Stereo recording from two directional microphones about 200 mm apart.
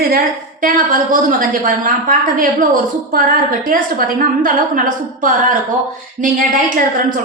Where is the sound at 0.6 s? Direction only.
45° right (ahead or behind).